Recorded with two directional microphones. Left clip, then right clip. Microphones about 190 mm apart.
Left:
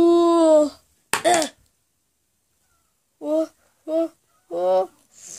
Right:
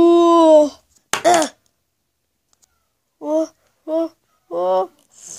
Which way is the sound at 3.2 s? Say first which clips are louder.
Right 3 dB; 5° right (ahead or behind).